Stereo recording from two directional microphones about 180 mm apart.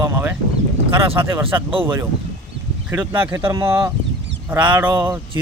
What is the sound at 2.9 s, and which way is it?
Speech, 10° right (ahead or behind).